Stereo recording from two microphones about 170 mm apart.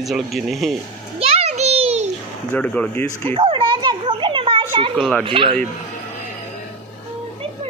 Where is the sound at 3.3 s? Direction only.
30° right (ahead or behind).